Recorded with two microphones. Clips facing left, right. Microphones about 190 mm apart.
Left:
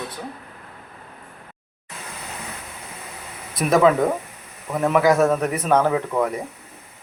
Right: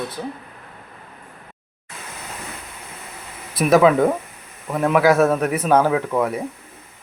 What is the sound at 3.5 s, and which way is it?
Speech, 5° right (ahead or behind).